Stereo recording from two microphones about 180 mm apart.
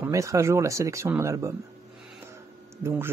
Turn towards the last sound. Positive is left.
turn(degrees=-10)  # may be behind; listen again after turning